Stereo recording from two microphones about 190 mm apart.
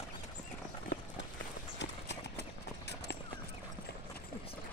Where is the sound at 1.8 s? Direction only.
65° left (ahead or behind).